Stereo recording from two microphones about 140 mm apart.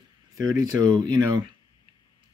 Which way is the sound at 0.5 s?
30° right (ahead or behind).